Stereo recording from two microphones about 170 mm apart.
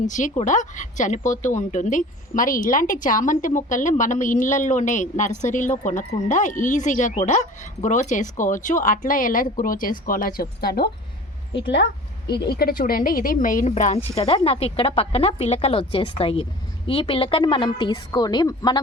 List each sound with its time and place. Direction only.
0.0 s a woman's voice: 45° left (ahead or behind); by 10.8 s 65° left (ahead or behind)
12.5 s speech: 60° left (ahead or behind); by 18.8 s 25° left (ahead or behind)